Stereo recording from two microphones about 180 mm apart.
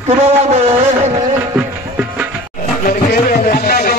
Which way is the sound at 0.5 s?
35° right (ahead or behind).